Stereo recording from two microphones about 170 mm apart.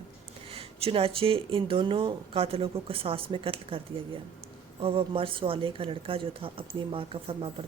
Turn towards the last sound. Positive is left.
turn(degrees=-30)  # may be behind; listen again after turning